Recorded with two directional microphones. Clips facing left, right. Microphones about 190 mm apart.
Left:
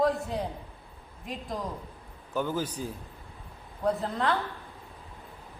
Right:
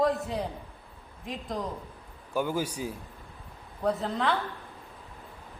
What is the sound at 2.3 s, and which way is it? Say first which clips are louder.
Speech: right 1 dB; 10° right (ahead or behind).